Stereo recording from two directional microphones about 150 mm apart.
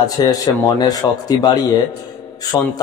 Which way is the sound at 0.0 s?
25° left (ahead or behind).